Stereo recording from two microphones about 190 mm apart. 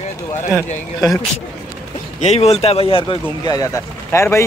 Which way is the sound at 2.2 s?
35° left (ahead or behind).